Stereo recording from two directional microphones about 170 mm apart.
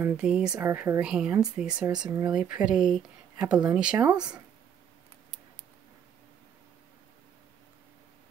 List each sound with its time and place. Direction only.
0.0 s speech: 5° right (ahead or behind)
2.0 s speech: 20° right (ahead or behind)
2.3 s speech: 5° right (ahead or behind)